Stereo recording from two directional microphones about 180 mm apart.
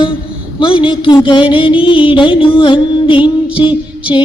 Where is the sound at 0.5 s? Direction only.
30° left (ahead or behind).